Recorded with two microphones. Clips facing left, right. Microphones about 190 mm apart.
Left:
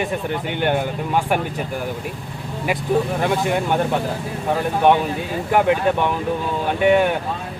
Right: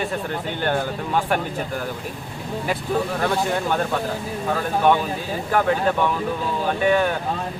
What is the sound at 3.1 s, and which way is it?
Speech, 15° left (ahead or behind).